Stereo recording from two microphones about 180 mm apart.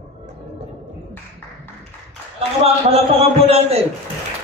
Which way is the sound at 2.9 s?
35° right (ahead or behind).